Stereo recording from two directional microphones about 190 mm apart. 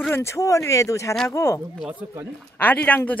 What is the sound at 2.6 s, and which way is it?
Speech, 10° left (ahead or behind).